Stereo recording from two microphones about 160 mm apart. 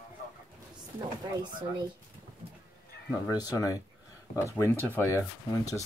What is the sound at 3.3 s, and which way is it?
Speech, 20° left (ahead or behind).